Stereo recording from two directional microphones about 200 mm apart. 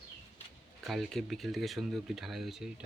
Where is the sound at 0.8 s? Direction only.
Centre (ahead or behind).